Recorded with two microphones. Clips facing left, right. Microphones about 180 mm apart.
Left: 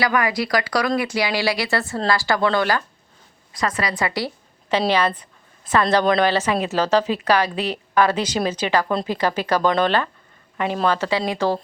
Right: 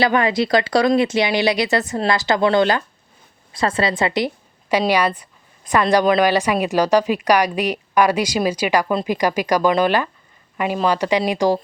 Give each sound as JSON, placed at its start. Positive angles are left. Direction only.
{"t": 0.0, "sound": "speech", "side_deg": -25}
{"t": 4.9, "sound": "a woman's voice", "side_deg": -10}